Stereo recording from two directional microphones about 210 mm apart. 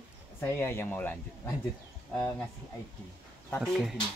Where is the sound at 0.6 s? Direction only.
10° left (ahead or behind).